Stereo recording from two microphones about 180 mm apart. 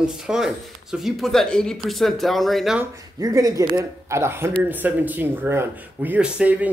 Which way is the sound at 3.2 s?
20° right (ahead or behind).